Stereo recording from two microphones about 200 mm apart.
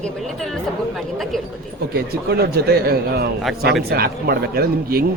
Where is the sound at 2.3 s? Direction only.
55° right (ahead or behind).